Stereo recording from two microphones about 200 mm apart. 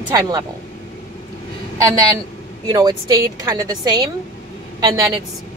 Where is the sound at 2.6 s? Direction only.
15° right (ahead or behind).